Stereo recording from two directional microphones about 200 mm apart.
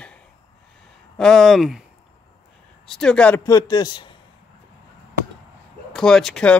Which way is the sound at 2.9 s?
5° left (ahead or behind).